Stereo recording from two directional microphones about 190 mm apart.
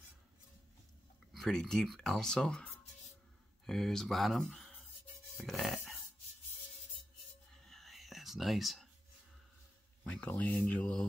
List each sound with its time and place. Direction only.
1.3 s speech: centre (ahead or behind)
5.4 s a sound: centre (ahead or behind)
7.5 s whispering: centre (ahead or behind)
10.0 s speech: 5° left (ahead or behind)